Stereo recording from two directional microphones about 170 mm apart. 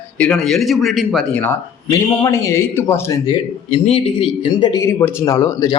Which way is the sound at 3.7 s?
35° left (ahead or behind).